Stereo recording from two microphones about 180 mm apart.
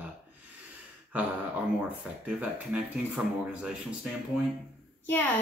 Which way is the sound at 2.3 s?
5° right (ahead or behind).